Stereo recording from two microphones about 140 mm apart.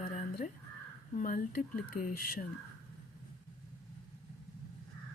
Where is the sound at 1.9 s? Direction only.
90° left.